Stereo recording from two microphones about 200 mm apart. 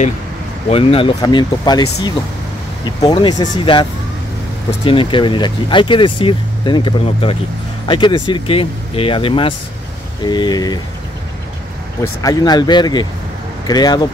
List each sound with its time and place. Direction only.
0.7 s speech: 30° left (ahead or behind)
12.0 s speech: 20° left (ahead or behind)